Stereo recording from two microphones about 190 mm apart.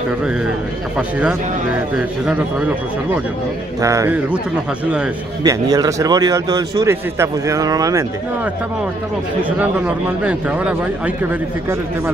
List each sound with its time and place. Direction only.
3.8 s a man's voice: 15° right (ahead or behind)
5.4 s a man's voice: 20° right (ahead or behind)